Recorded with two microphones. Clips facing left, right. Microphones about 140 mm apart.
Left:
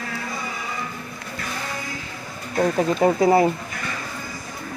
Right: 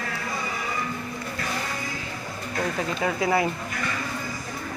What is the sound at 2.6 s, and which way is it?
Speech, 40° left (ahead or behind).